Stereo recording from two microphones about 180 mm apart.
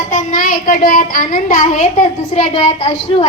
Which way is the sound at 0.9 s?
50° left (ahead or behind).